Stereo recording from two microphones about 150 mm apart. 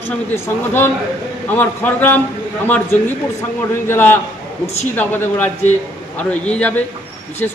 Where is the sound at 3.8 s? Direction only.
15° left (ahead or behind).